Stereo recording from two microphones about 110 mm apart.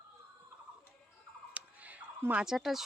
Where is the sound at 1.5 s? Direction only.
15° right (ahead or behind).